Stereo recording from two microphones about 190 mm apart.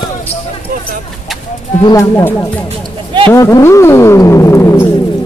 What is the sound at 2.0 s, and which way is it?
Speech, 15° left (ahead or behind).